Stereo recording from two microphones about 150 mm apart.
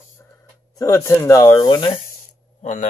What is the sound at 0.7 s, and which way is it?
Speech, 20° left (ahead or behind).